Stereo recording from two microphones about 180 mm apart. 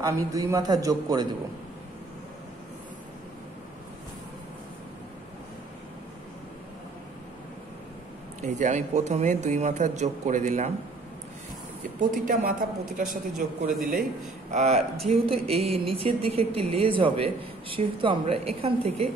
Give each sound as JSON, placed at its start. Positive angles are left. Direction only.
{"t": 0.0, "sound": "a man's voice", "side_deg": -20}
{"t": 8.4, "sound": "a woman's voice", "side_deg": -40}
{"t": 12.3, "sound": "a woman's voice", "side_deg": -50}
{"t": 14.5, "sound": "a woman's voice", "side_deg": -40}